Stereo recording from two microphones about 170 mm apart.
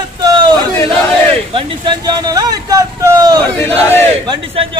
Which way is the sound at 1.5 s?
25° right (ahead or behind).